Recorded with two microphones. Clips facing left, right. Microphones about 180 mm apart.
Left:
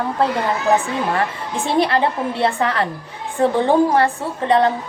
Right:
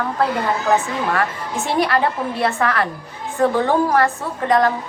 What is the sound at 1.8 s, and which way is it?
A woman's voice, 25° left (ahead or behind).